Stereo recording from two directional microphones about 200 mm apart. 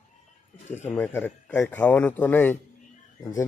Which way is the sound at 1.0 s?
10° left (ahead or behind).